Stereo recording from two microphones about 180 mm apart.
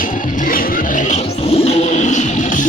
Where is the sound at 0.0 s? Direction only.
50° left (ahead or behind).